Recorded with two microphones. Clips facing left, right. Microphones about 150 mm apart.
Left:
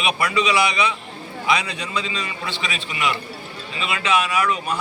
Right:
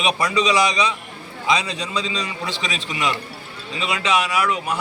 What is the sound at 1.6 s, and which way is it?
A man's voice, 20° right (ahead or behind).